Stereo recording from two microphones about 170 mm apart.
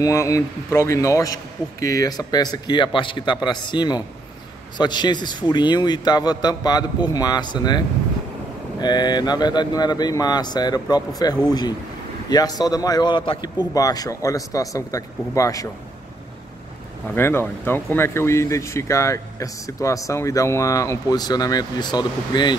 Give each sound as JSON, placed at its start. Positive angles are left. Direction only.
{"t": 0.0, "sound": "a man's voice", "side_deg": 15}
{"t": 17.1, "sound": "speech", "side_deg": 15}